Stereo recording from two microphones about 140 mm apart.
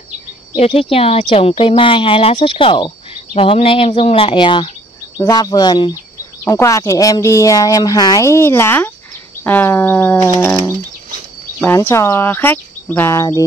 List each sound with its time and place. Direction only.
0.6 s speech: 40° left (ahead or behind); by 10.3 s 15° left (ahead or behind)
11.6 s speech: 15° left (ahead or behind)